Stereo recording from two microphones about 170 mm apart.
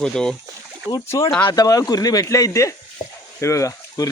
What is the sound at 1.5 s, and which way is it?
Speech, 20° left (ahead or behind).